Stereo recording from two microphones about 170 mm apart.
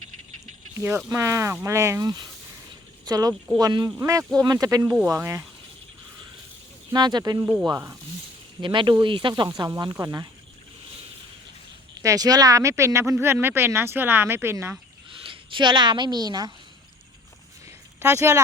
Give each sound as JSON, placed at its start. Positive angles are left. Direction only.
{"t": 0.8, "sound": "speech", "side_deg": -15}
{"t": 6.9, "sound": "speech", "side_deg": -25}
{"t": 7.4, "sound": "speech", "side_deg": -5}
{"t": 8.6, "sound": "speech", "side_deg": -30}
{"t": 12.0, "sound": "speech", "side_deg": -20}
{"t": 15.2, "sound": "a woman's voice", "side_deg": -30}
{"t": 18.0, "sound": "speech", "side_deg": -15}